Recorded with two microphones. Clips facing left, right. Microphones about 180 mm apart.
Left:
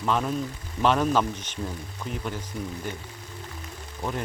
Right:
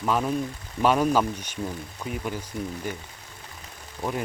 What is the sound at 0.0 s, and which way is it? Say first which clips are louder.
Speech: right 1 dB; 5° right (ahead or behind).